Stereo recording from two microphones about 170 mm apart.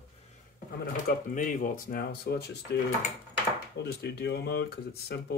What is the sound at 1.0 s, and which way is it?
Speech, 50° left (ahead or behind).